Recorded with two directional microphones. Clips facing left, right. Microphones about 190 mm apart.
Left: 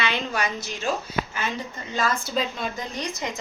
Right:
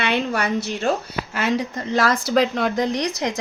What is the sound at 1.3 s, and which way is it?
A woman's voice, 80° right.